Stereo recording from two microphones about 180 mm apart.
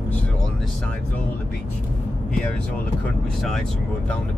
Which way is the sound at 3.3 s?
Centre (ahead or behind).